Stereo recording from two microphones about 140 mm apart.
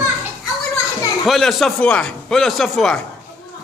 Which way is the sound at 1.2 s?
Centre (ahead or behind).